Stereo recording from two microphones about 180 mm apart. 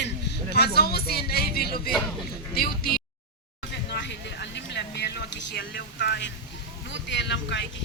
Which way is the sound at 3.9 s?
70° left (ahead or behind).